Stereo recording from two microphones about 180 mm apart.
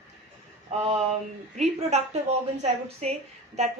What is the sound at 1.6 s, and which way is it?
A woman's voice, 40° right (ahead or behind).